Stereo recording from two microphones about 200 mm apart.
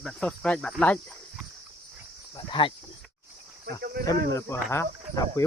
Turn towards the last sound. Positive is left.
turn(degrees=15)  # may be behind; listen again after turning